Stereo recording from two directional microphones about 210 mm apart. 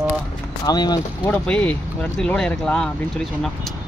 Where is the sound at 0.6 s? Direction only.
20° left (ahead or behind).